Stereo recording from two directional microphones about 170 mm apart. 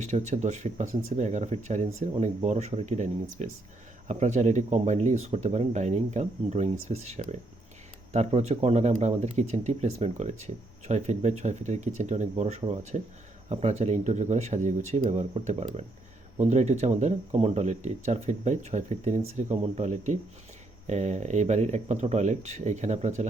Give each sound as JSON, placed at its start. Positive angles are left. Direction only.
{"t": 0.0, "sound": "speech", "side_deg": -45}